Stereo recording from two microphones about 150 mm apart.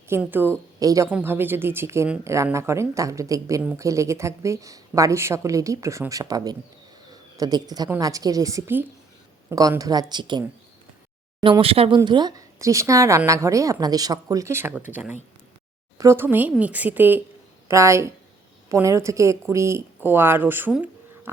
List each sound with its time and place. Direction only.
0.1 s speech: 15° right (ahead or behind); by 10.4 s 30° right (ahead or behind)
11.4 s speech: 35° right (ahead or behind)
11.9 s speech: 30° right (ahead or behind)
16.0 s speech: 15° right (ahead or behind)